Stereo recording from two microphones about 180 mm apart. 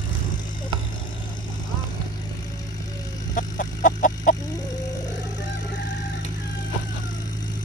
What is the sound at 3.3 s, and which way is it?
Chicken, 45° left (ahead or behind).